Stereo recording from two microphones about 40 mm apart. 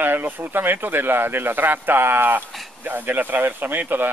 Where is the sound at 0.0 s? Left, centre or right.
Right.